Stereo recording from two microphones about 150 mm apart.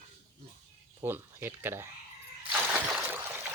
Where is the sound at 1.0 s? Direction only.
15° right (ahead or behind).